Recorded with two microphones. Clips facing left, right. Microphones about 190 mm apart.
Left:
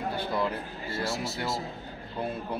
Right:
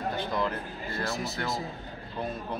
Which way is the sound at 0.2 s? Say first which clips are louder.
Left 2 dB; 10° left (ahead or behind).